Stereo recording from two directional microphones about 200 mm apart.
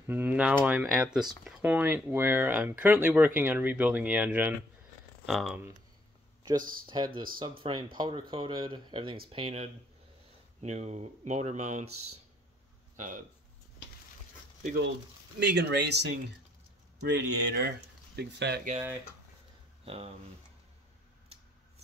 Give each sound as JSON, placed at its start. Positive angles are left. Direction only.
{"t": 0.1, "sound": "speech", "side_deg": -10}
{"t": 6.4, "sound": "speech", "side_deg": -20}
{"t": 11.8, "sound": "speech", "side_deg": -90}
{"t": 12.9, "sound": "speech", "side_deg": -40}
{"t": 15.3, "sound": "speech", "side_deg": -55}
{"t": 17.1, "sound": "speech", "side_deg": -55}
{"t": 19.8, "sound": "speech", "side_deg": -30}